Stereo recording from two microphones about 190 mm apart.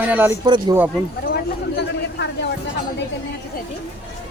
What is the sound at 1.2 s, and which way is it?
Chatter, 60° left (ahead or behind).